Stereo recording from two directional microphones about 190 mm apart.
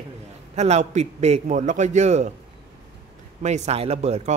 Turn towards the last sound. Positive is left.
turn(degrees=-35)  # may be behind; listen again after turning